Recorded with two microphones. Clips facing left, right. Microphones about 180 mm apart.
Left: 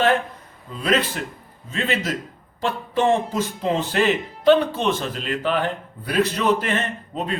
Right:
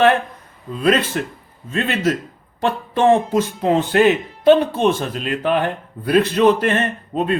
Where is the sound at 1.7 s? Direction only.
55° right (ahead or behind).